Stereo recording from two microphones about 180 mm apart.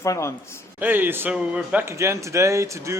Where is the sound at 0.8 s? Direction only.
10° right (ahead or behind).